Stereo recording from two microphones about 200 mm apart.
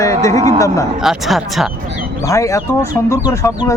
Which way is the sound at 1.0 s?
Centre (ahead or behind).